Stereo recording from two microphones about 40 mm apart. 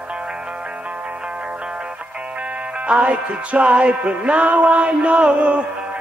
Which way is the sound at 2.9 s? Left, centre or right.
Right.